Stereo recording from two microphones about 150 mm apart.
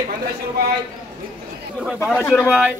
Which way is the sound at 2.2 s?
15° left (ahead or behind).